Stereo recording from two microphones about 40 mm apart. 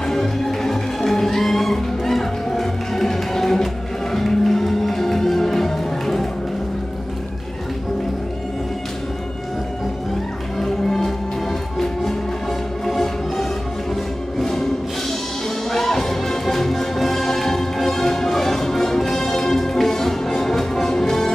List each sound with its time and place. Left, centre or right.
0.0 s music: centre
10.6 s music: centre
15.7 s music: centre